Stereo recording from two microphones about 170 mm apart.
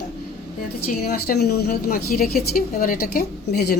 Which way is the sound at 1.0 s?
65° left (ahead or behind).